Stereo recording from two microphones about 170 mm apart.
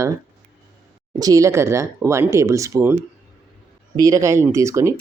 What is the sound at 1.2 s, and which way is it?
Speech, 20° right (ahead or behind).